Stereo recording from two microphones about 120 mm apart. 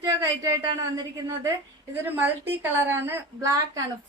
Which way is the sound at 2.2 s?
15° right (ahead or behind).